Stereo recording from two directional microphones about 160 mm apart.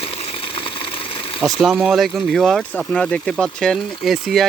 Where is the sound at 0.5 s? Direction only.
35° left (ahead or behind).